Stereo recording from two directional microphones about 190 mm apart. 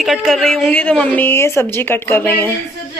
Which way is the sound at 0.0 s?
Centre (ahead or behind).